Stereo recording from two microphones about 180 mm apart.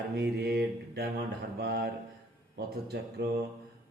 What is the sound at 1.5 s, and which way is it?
Speech, 65° right (ahead or behind).